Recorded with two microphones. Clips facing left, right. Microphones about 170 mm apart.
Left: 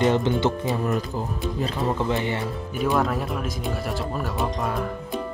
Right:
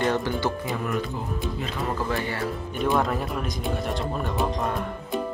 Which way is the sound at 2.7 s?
5° left (ahead or behind).